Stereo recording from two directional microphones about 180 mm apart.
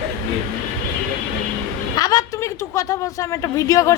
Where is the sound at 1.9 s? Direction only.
20° left (ahead or behind).